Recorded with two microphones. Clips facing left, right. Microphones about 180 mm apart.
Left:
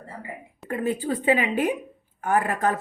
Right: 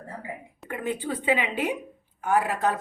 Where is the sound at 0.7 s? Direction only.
40° left (ahead or behind).